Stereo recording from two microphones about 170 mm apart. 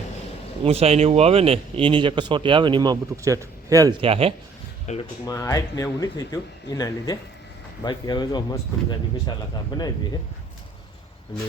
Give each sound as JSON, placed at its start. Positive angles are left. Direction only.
{"t": 0.6, "sound": "speech", "side_deg": -35}
{"t": 4.0, "sound": "speech", "side_deg": -35}
{"t": 4.9, "sound": "speech", "side_deg": 45}
{"t": 5.2, "sound": "speech", "side_deg": 20}